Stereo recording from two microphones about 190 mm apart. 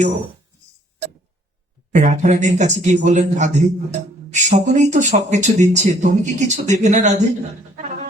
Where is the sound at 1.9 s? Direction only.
35° right (ahead or behind).